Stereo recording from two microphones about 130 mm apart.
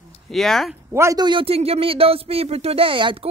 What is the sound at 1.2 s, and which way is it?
A man's voice, 40° right (ahead or behind).